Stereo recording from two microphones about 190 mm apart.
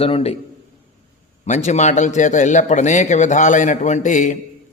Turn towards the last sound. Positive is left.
turn(degrees=40)  # may be behind; listen again after turning